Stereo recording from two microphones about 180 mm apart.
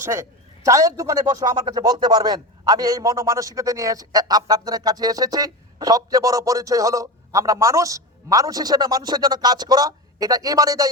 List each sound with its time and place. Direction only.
0.0 s a man's voice: 15° right (ahead or behind)